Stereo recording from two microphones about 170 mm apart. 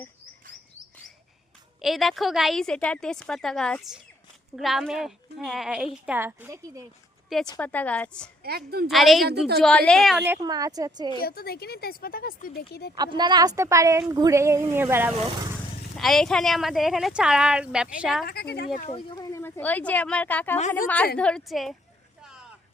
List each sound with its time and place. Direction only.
1.8 s speech: centre (ahead or behind); by 6.8 s 15° right (ahead or behind)
7.6 s speech: 10° left (ahead or behind)
8.4 s a woman's voice: 65° right (ahead or behind)
8.9 s speech: centre (ahead or behind)
10.2 s a woman's voice: 20° right (ahead or behind)
11.2 s speech: 65° left (ahead or behind)
13.0 s a woman's voice: 25° right (ahead or behind)
16.0 s speech: centre (ahead or behind)
18.3 s speech: 70° left (ahead or behind)
18.9 s speech: 30° left (ahead or behind); by 20.6 s 10° left (ahead or behind)
20.6 s a woman's voice: 45° left (ahead or behind)
20.8 s speech: 10° left (ahead or behind)
22.2 s vehicle: 5° right (ahead or behind)